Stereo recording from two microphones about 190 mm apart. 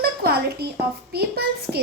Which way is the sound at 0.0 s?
55° right (ahead or behind).